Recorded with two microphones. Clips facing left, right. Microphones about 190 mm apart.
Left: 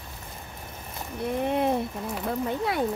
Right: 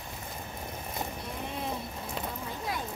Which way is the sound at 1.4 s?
60° left (ahead or behind).